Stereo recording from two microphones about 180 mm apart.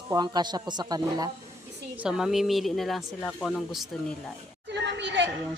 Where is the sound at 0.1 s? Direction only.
25° right (ahead or behind).